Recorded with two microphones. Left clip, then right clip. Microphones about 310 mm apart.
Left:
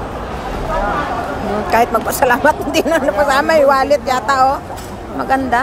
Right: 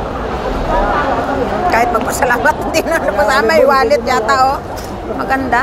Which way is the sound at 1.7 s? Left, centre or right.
Left.